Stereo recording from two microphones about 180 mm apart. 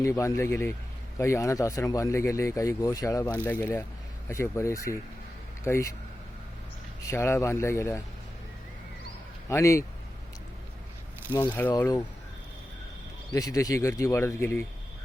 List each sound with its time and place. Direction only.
0.0 s speech: 15° left (ahead or behind)
7.0 s speech: 15° left (ahead or behind)
9.5 s speech: 15° left (ahead or behind)
11.8 s speech: 20° left (ahead or behind)
13.3 s speech: 20° left (ahead or behind)